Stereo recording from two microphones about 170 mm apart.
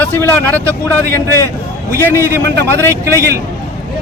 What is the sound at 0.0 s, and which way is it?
Speech, 10° left (ahead or behind).